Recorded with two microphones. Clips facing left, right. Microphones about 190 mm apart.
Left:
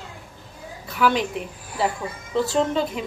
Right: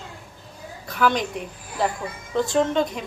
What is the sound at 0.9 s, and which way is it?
Speech, 5° left (ahead or behind).